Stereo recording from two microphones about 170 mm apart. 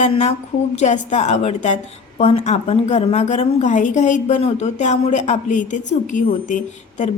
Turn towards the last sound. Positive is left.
turn(degrees=45)  # may be behind; listen again after turning